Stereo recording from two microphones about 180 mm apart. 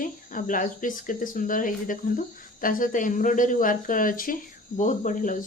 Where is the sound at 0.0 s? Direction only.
50° left (ahead or behind).